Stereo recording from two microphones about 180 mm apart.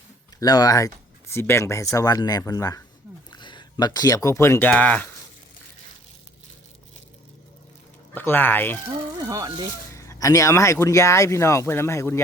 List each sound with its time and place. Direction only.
0.3 s speech: 20° left (ahead or behind)
8.1 s speech: 10° left (ahead or behind)
9.2 s speech: 20° right (ahead or behind)
9.9 s speech: 15° left (ahead or behind)